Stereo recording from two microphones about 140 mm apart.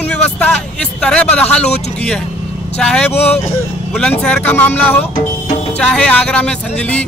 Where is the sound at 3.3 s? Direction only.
15° left (ahead or behind).